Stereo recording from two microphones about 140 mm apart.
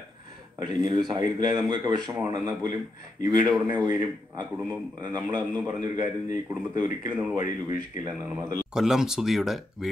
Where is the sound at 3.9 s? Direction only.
30° right (ahead or behind).